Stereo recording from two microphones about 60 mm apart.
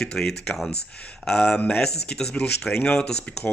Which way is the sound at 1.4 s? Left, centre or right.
Left.